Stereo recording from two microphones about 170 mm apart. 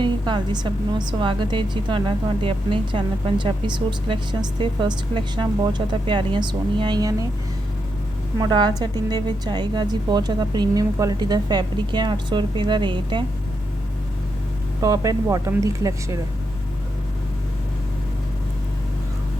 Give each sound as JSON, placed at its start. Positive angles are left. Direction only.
{"t": 0.0, "sound": "a woman's voice", "side_deg": -25}
{"t": 8.4, "sound": "a woman's voice", "side_deg": -25}
{"t": 14.8, "sound": "a woman's voice", "side_deg": -20}